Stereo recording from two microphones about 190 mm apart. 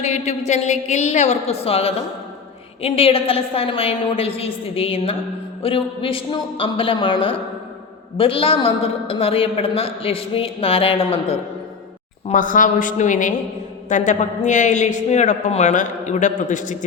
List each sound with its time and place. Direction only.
0.0 s a woman's voice: 35° left (ahead or behind)
12.3 s a woman's voice: 45° left (ahead or behind)